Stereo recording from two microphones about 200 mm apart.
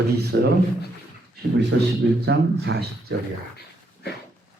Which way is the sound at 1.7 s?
55° right (ahead or behind).